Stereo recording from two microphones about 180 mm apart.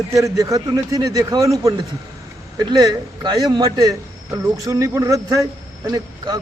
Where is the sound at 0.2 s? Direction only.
15° right (ahead or behind).